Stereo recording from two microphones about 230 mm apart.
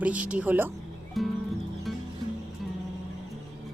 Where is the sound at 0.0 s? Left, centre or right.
Centre.